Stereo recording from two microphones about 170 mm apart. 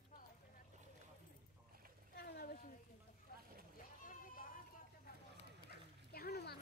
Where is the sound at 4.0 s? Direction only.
55° left (ahead or behind).